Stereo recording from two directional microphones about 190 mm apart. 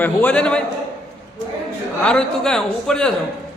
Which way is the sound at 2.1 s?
5° left (ahead or behind).